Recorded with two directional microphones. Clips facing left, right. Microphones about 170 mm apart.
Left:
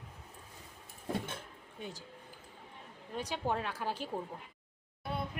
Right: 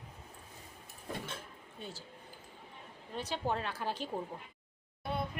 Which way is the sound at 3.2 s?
10° left (ahead or behind).